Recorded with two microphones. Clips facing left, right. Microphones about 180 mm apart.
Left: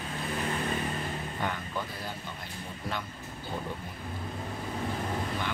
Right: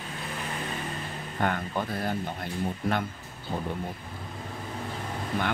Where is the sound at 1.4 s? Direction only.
55° right (ahead or behind).